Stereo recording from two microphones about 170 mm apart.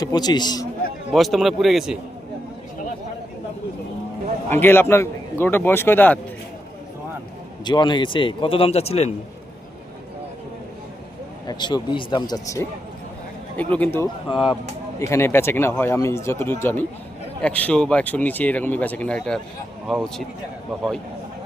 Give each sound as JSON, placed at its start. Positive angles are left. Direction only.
{"t": 0.0, "sound": "a man's voice", "side_deg": 25}
{"t": 1.1, "sound": "speech", "side_deg": 0}
{"t": 4.4, "sound": "speech", "side_deg": 10}
{"t": 7.6, "sound": "a man's voice", "side_deg": 25}
{"t": 11.4, "sound": "a man's voice", "side_deg": 25}
{"t": 13.7, "sound": "speech", "side_deg": 10}
{"t": 14.3, "sound": "speech", "side_deg": 30}
{"t": 15.1, "sound": "speech", "side_deg": 15}